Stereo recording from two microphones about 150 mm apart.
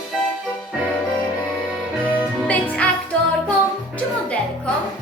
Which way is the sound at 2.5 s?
10° left (ahead or behind).